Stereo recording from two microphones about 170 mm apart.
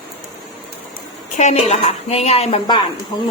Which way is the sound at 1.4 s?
40° left (ahead or behind).